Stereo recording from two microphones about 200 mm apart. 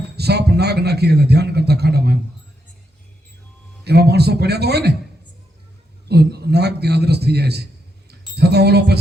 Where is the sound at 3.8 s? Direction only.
55° right (ahead or behind).